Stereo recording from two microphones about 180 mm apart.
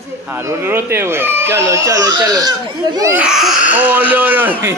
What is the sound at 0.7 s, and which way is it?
Speech, 15° right (ahead or behind).